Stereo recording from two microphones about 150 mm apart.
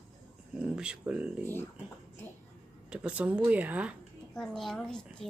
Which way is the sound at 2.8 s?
5° right (ahead or behind).